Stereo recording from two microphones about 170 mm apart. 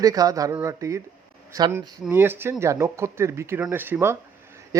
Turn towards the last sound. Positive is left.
turn(degrees=-20)  # may be behind; listen again after turning